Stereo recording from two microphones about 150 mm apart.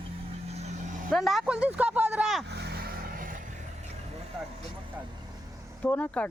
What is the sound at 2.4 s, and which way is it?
Vehicle, 90° right.